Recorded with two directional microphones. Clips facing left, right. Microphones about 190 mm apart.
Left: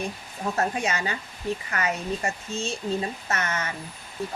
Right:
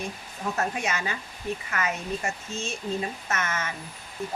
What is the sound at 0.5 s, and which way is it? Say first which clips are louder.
Speech: left 3 dB; 35° left (ahead or behind).